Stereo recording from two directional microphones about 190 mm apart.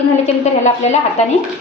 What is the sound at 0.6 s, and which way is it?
Speech, 35° left (ahead or behind).